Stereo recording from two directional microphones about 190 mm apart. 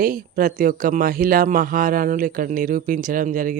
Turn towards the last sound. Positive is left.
turn(degrees=-45)  # may be behind; listen again after turning